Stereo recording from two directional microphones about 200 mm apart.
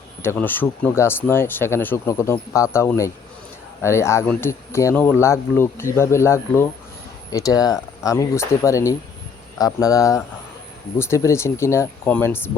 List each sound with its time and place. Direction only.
0.2 s speech: 10° left (ahead or behind)